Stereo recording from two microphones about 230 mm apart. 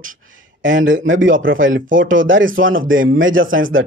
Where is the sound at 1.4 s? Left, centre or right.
Right.